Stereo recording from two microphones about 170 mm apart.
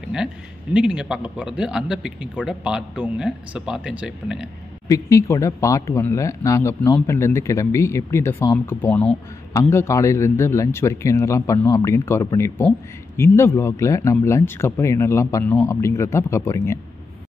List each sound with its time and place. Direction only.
0.7 s speech: 5° right (ahead or behind)
4.8 s speech: 20° left (ahead or behind)